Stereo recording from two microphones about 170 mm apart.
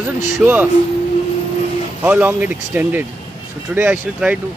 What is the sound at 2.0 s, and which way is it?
Speech, 10° right (ahead or behind).